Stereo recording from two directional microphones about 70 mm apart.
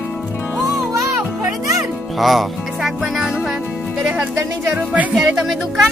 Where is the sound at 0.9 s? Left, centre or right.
Right.